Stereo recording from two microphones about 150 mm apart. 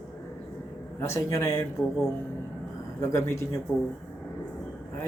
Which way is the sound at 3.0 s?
20° left (ahead or behind).